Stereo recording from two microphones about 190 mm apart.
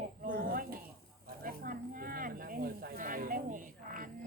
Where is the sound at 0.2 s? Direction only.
50° right (ahead or behind).